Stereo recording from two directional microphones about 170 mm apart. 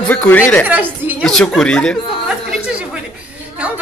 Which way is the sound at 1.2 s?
5° left (ahead or behind).